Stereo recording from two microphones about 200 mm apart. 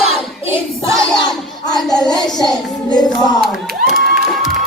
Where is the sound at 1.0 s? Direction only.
Centre (ahead or behind).